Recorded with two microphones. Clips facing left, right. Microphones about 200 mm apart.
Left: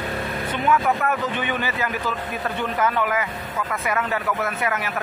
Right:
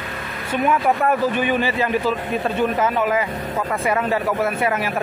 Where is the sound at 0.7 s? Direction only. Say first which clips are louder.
Right 2 dB; 30° right (ahead or behind).